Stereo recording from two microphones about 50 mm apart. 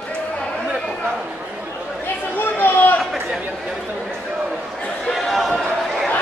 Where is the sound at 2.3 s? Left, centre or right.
Left.